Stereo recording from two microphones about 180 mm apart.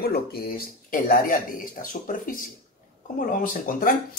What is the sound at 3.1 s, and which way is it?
Speech, 50° left (ahead or behind).